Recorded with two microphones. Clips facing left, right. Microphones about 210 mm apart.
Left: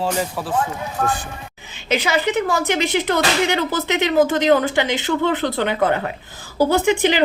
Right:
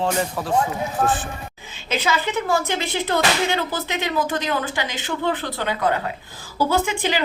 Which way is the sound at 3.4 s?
20° left (ahead or behind).